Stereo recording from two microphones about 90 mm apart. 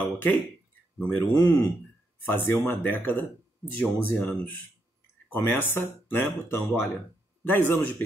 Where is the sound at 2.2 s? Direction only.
25° left (ahead or behind).